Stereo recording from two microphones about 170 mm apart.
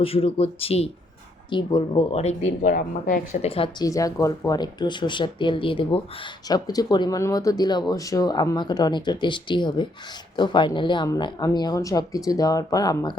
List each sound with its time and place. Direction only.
0.0 s speech: 35° left (ahead or behind); by 3.2 s 55° left (ahead or behind)
3.4 s speech: 35° left (ahead or behind)
3.8 s speech: 20° left (ahead or behind)